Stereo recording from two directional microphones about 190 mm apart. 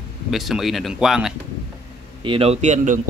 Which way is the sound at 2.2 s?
30° right (ahead or behind).